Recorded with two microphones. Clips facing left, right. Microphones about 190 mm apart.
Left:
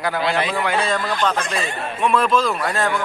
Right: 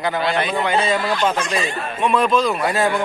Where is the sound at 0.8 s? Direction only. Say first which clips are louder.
Right 2 dB; 10° right (ahead or behind).